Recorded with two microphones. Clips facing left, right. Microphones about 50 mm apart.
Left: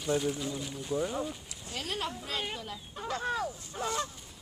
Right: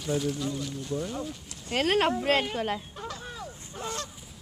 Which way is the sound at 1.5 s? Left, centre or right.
Right.